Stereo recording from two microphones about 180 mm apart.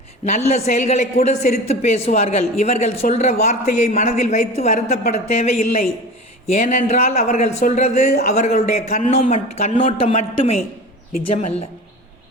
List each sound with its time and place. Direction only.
0.3 s a woman's voice: 40° left (ahead or behind)